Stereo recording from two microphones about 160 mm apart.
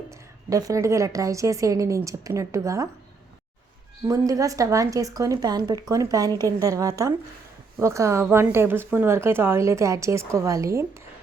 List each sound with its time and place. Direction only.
0.1 s a woman's voice: 20° right (ahead or behind)
4.0 s a woman's voice: 20° right (ahead or behind)